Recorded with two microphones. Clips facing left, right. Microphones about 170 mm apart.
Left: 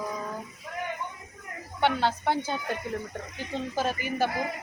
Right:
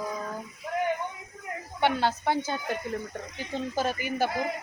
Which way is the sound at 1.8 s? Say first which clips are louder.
Even; 5° right (ahead or behind).